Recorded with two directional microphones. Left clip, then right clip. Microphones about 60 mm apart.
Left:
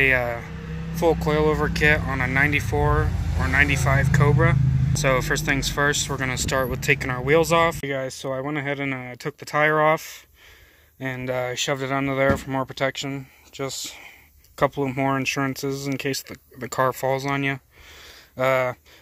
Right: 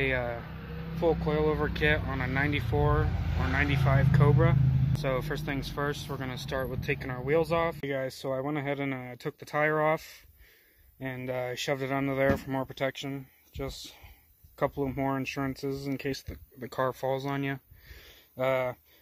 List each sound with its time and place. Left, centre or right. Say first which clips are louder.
0.0 s speech: left 10 dB; centre
0.9 s speech: left 7 dB; left
1.7 s speech: left 8 dB; centre
2.0 s speech: left 9 dB; left
2.8 s speech: left 6 dB; centre
3.6 s speech: left 7 dB; centre
7.8 s speech: left 5 dB; centre
8.1 s speech: left 5 dB; right
9.0 s speech: left 6 dB; centre
11.5 s speech: left 6 dB; right
13.6 s speech: left 9 dB; centre